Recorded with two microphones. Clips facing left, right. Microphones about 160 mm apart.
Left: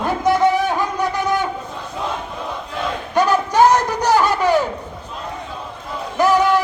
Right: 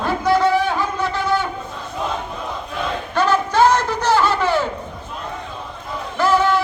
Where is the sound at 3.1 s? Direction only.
15° left (ahead or behind).